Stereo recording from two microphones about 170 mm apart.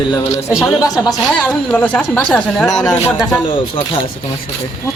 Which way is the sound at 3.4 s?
30° left (ahead or behind).